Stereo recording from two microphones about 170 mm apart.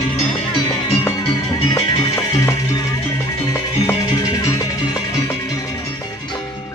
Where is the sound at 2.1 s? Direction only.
20° left (ahead or behind).